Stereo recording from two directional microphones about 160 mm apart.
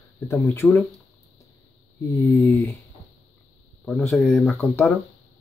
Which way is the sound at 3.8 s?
5° left (ahead or behind).